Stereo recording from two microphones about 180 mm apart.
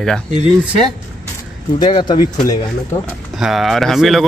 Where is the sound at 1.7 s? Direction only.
25° left (ahead or behind).